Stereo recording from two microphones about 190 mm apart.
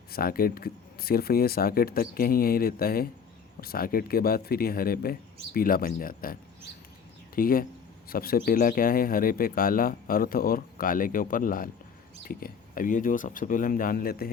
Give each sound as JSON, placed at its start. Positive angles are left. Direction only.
{"t": 0.1, "sound": "speech", "side_deg": 50}
{"t": 7.3, "sound": "speech", "side_deg": 50}